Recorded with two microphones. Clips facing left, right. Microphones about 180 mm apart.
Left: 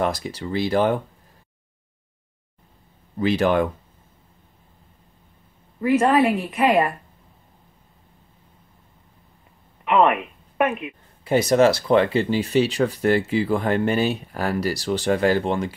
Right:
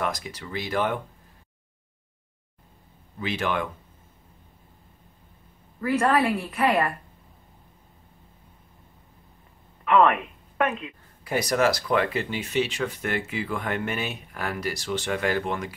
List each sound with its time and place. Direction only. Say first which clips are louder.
0.0 s speech: left 6 dB; 30° left (ahead or behind)
3.2 s speech: left 9 dB; 40° left (ahead or behind)
5.8 s a woman's voice: left 5 dB; 20° left (ahead or behind)
9.8 s speech: left 2 dB; 20° left (ahead or behind)